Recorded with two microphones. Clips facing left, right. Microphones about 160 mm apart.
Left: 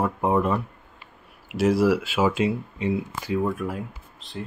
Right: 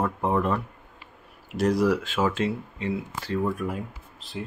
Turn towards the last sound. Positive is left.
turn(degrees=0)  # may be behind; listen again after turning